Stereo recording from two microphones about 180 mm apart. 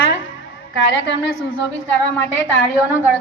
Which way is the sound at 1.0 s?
80° left.